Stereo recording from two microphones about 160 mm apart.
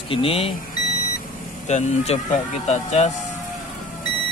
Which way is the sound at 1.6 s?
45° left (ahead or behind).